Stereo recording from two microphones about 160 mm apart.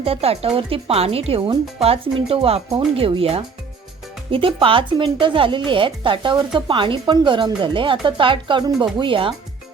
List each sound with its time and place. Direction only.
0.0 s speech: 40° right (ahead or behind)